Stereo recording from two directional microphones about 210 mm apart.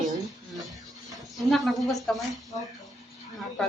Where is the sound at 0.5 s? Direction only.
Centre (ahead or behind).